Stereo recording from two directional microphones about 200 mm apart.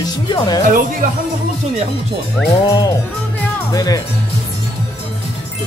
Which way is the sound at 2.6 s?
20° left (ahead or behind).